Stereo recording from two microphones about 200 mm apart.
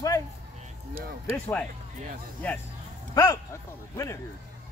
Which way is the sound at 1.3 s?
5° left (ahead or behind).